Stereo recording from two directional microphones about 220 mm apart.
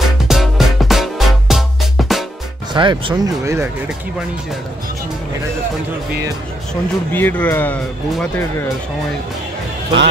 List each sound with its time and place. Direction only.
0.0 s music: centre (ahead or behind)
2.7 s speech: 20° right (ahead or behind)
6.7 s speech: 10° left (ahead or behind)